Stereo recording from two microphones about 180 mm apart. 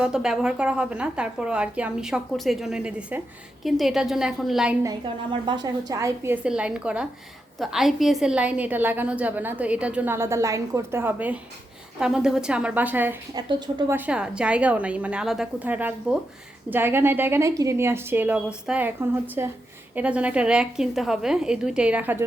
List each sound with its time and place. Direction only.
0.0 s a woman's voice: 5° right (ahead or behind)
4.8 s a woman's voice: 25° right (ahead or behind)
13.3 s speech: 25° right (ahead or behind)
13.9 s a woman's voice: 5° right (ahead or behind)